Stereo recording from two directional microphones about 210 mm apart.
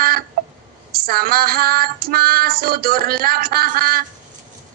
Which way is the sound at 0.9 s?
45° right (ahead or behind).